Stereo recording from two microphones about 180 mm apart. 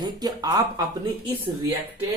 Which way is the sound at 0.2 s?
20° right (ahead or behind).